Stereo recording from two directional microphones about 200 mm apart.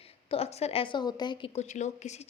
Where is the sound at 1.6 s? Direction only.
35° left (ahead or behind).